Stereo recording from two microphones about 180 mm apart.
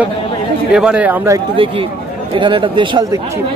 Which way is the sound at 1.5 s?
30° right (ahead or behind).